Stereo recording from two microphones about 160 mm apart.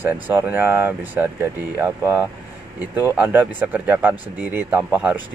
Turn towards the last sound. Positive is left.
turn(degrees=-10)  # may be behind; listen again after turning